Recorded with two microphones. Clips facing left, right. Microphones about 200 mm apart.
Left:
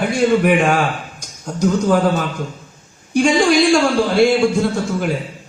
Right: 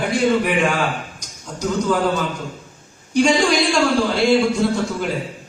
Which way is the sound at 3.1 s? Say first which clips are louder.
Left 2 dB; 50° left (ahead or behind).